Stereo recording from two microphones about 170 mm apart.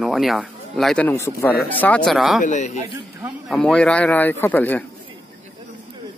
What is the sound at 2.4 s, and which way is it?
Speech, 45° left (ahead or behind).